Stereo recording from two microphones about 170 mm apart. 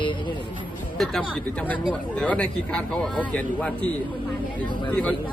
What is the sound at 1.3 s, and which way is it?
Speech, 10° left (ahead or behind).